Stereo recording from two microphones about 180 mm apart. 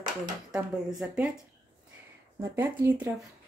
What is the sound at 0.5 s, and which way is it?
Speech, 5° right (ahead or behind).